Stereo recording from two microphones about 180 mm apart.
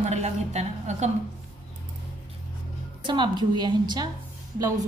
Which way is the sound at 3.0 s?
25° right (ahead or behind).